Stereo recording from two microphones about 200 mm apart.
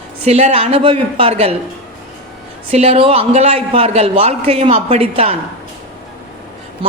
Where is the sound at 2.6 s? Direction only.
30° right (ahead or behind).